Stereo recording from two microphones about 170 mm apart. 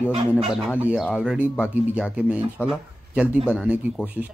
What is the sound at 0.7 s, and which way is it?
Speech, 10° right (ahead or behind).